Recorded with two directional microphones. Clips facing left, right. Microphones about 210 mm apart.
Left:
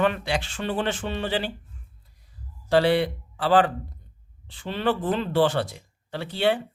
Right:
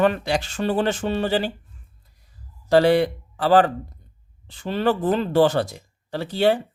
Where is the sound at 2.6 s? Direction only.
45° right (ahead or behind).